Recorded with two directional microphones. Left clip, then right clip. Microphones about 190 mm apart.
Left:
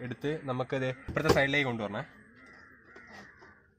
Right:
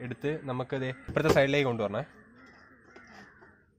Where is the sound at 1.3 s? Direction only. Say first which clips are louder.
Right 3 dB; 50° right (ahead or behind).